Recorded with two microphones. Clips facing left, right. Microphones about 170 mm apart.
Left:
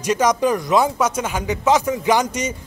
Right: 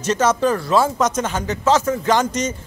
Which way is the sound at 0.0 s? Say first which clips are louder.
Even; 15° left (ahead or behind).